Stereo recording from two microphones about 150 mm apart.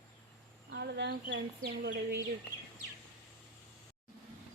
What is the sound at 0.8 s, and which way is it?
Speech, 90° right.